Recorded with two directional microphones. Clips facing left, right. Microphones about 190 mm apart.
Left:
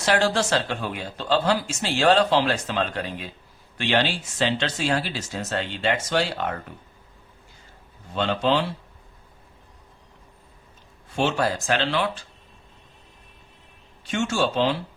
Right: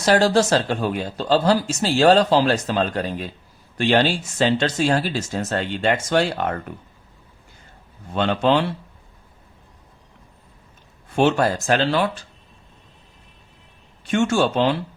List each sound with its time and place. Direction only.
0.0 s speech: 40° right (ahead or behind)
8.1 s speech: 55° right (ahead or behind)
11.1 s speech: 55° right (ahead or behind)
14.1 s speech: 55° right (ahead or behind)